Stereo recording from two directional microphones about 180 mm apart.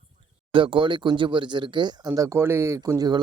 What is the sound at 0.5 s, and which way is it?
Speech, 30° right (ahead or behind).